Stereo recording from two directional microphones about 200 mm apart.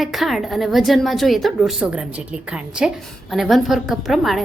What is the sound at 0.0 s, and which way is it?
A woman's voice, centre (ahead or behind).